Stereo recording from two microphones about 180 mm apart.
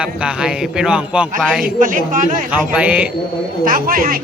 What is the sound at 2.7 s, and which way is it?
Speech, 10° right (ahead or behind).